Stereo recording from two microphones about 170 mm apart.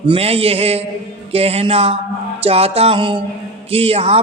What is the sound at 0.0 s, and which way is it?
A man's voice, 35° right (ahead or behind).